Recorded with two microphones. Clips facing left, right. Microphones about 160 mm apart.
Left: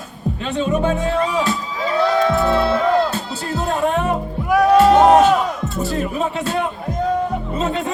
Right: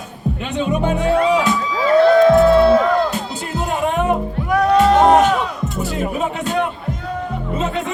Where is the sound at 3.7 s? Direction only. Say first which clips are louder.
Right 1 dB; 15° right (ahead or behind).